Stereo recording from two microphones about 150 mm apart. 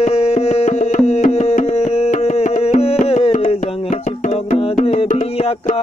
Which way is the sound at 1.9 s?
45° left (ahead or behind).